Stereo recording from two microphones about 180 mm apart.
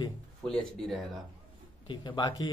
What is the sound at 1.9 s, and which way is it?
Speech, 25° left (ahead or behind).